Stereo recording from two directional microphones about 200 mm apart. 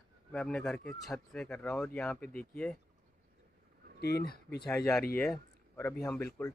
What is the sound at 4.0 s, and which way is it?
Speech, 50° left (ahead or behind).